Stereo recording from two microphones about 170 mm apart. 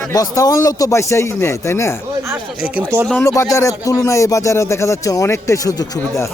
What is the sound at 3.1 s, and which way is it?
Speech, 15° left (ahead or behind).